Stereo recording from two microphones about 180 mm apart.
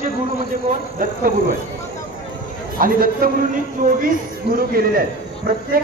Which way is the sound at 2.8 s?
55° right (ahead or behind).